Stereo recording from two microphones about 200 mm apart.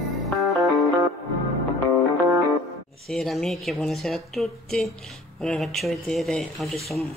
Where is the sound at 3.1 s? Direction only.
Centre (ahead or behind).